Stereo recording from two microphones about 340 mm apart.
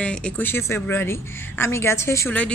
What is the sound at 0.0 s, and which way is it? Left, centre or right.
Speech, centre.